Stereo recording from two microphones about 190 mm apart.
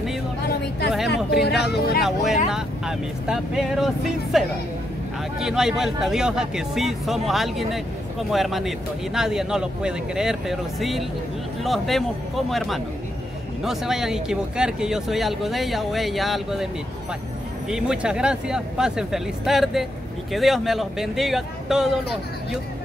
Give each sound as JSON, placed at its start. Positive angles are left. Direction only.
{"t": 1.4, "sound": "a sound", "side_deg": 60}
{"t": 2.0, "sound": "speech", "side_deg": 0}
{"t": 17.6, "sound": "speech", "side_deg": -5}